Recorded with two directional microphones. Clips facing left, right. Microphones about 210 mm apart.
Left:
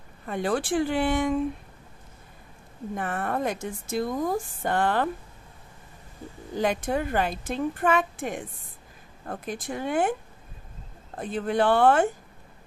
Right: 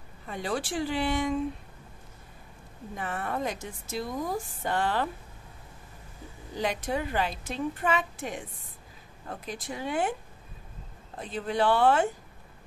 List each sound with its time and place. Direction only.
0.3 s speech: 55° left (ahead or behind)
3.0 s speech: 50° left (ahead or behind)
6.5 s speech: 50° left (ahead or behind)
11.1 s speech: 50° left (ahead or behind)